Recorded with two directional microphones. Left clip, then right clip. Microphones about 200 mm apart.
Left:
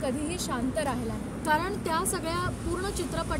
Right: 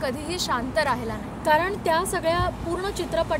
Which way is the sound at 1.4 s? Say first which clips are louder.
Right 7 dB; 25° left (ahead or behind).